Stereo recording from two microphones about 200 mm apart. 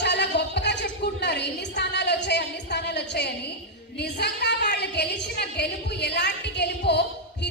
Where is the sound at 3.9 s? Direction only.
55° left (ahead or behind).